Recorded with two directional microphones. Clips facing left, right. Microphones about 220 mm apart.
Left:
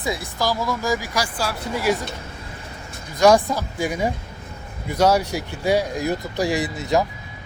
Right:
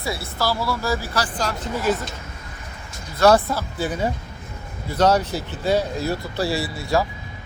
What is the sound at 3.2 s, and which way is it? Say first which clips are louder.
Speech: left 1 dB; 15° left (ahead or behind).